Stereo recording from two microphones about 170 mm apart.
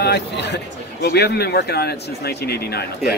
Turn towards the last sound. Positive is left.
turn(degrees=70)  # may be behind; listen again after turning